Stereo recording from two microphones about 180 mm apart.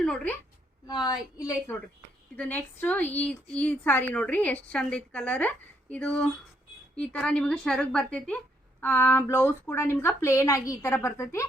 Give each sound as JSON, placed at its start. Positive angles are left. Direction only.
{"t": 0.0, "sound": "a woman's voice", "side_deg": 5}
{"t": 0.9, "sound": "a woman's voice", "side_deg": 20}